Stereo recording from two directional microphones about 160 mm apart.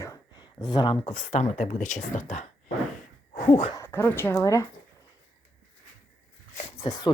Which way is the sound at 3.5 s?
35° left (ahead or behind).